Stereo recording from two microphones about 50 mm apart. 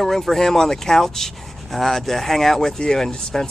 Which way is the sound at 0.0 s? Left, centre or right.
Centre.